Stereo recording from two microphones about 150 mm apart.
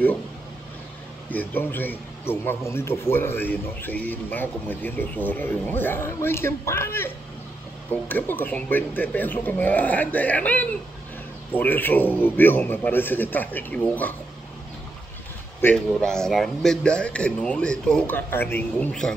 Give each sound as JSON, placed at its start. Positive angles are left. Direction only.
{"t": 1.3, "sound": "a man's voice", "side_deg": 10}
{"t": 15.6, "sound": "a man's voice", "side_deg": 5}